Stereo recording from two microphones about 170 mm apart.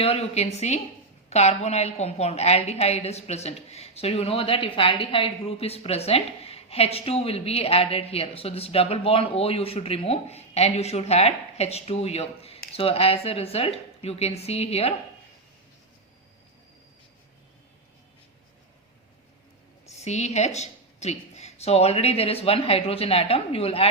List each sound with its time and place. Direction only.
0.0 s a woman's voice: 35° left (ahead or behind)
20.0 s a woman's voice: 40° left (ahead or behind)